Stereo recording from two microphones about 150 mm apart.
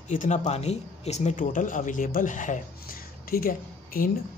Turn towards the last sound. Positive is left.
turn(degrees=75)  # may be behind; listen again after turning